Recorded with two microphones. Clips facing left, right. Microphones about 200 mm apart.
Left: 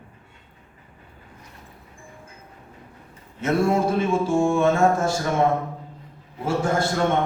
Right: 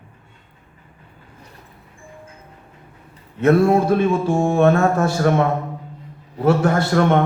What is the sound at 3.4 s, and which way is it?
Speech, 60° right (ahead or behind).